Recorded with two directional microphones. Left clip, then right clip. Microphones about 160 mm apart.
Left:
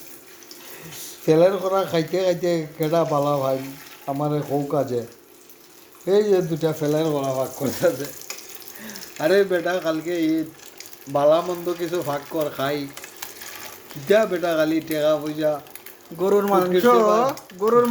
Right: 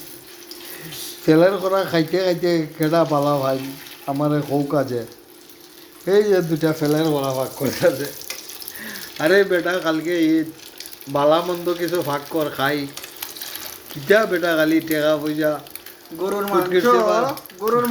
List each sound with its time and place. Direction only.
1.2 s a man's voice: 5° left (ahead or behind)
6.1 s a man's voice: 5° left (ahead or behind)
16.2 s speech: 90° left
17.6 s speech: 80° left